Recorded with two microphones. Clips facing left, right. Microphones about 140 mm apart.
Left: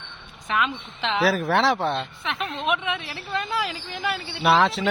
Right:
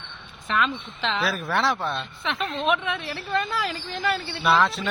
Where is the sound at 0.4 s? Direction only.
10° left (ahead or behind).